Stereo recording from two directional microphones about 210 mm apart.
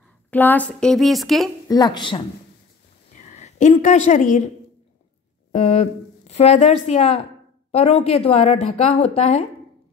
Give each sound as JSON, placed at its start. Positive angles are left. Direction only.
{"t": 0.3, "sound": "a woman's voice", "side_deg": 10}
{"t": 1.7, "sound": "a woman's voice", "side_deg": 20}
{"t": 3.2, "sound": "a woman's voice", "side_deg": 35}
{"t": 5.5, "sound": "a woman's voice", "side_deg": 30}